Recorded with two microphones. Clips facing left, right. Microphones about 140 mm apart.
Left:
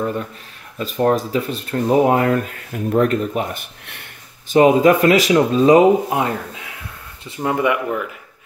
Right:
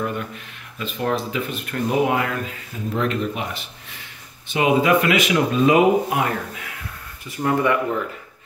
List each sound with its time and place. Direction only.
0.7 s speech: 40° left (ahead or behind)
3.8 s a sound: 65° left (ahead or behind)
4.5 s speech: 40° left (ahead or behind); by 7.8 s 15° left (ahead or behind)